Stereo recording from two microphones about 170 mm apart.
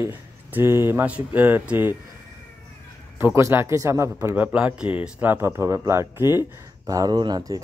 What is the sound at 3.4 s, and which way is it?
Speech, 15° right (ahead or behind).